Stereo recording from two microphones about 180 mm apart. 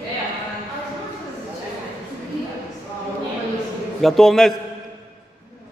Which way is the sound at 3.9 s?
Centre (ahead or behind).